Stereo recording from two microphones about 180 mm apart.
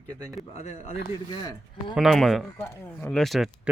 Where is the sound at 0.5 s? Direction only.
40° left (ahead or behind).